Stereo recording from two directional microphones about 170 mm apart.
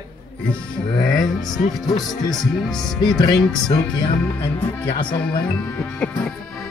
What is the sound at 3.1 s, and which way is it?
Speech, 25° left (ahead or behind).